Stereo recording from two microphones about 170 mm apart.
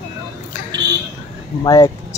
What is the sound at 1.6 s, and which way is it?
Speech, 20° left (ahead or behind).